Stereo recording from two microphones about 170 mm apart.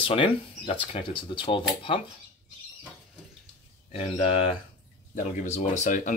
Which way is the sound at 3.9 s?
40° left (ahead or behind).